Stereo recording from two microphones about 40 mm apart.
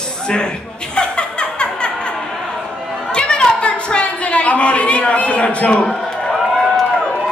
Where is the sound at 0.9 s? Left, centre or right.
Left.